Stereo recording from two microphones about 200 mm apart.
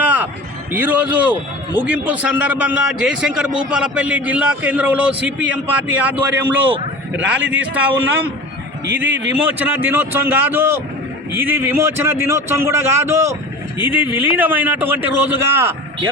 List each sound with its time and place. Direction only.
0.0 s a sound: 10° right (ahead or behind)
0.7 s a man's voice: 10° right (ahead or behind)
9.0 s a man's voice: 65° right (ahead or behind)
9.5 s a man's voice: 10° right (ahead or behind)